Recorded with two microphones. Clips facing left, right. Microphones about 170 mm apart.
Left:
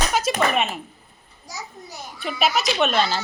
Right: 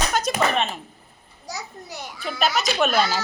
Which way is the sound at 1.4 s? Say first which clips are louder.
Right 2 dB; 70° right (ahead or behind).